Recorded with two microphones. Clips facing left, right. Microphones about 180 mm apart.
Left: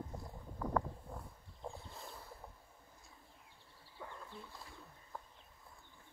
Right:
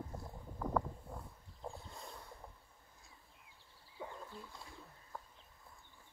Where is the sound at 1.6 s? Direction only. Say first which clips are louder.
Even; centre (ahead or behind).